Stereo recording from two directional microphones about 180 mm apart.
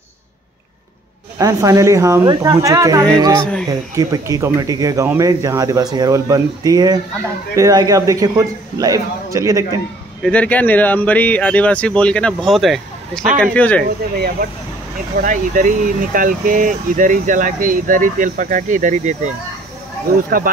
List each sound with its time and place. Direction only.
1.4 s speech: 20° right (ahead or behind)
10.2 s speech: 5° left (ahead or behind)
15.2 s speech: 45° right (ahead or behind)